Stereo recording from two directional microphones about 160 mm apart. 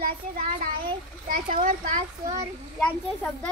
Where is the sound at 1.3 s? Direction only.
55° right (ahead or behind).